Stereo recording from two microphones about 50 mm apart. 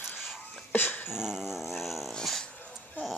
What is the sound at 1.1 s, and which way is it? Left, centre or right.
Dog, centre.